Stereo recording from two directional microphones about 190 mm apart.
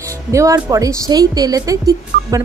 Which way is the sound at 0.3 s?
15° right (ahead or behind).